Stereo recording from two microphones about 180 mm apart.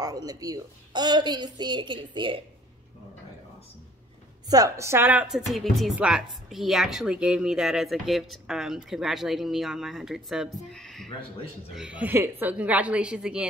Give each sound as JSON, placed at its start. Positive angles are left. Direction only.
{"t": 0.0, "sound": "a woman's voice", "side_deg": -20}
{"t": 4.5, "sound": "a woman's voice", "side_deg": -20}